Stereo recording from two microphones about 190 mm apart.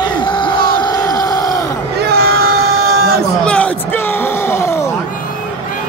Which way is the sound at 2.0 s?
55° right (ahead or behind).